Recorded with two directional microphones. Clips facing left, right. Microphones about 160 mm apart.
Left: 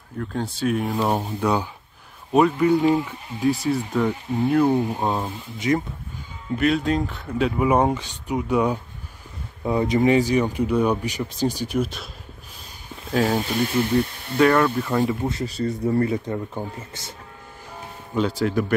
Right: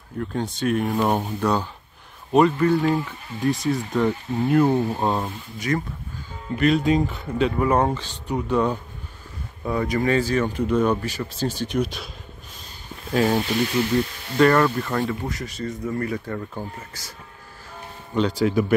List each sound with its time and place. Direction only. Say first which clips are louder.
0.2 s speech: even; centre (ahead or behind); by 3.2 s 20° left (ahead or behind)
3.3 s speech: left 1 dB; 5° left (ahead or behind)
5.6 s speech: left 3 dB; 20° left (ahead or behind)
6.6 s speech: right 2 dB; centre (ahead or behind)
9.7 s speech: left 3 dB; 20° left (ahead or behind); by 12.1 s centre (ahead or behind)
13.1 s speech: right 1 dB; centre (ahead or behind)
15.0 s speech: left 3 dB; 20° left (ahead or behind)
18.1 s speech: right 1 dB; centre (ahead or behind)